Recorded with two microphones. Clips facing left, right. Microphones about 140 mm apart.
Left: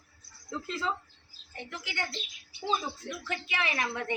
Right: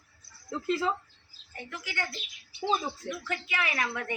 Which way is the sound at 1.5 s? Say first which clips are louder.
Right 1 dB; 20° left (ahead or behind).